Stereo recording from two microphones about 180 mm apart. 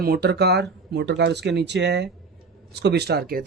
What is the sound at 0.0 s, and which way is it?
Speech, 60° right (ahead or behind).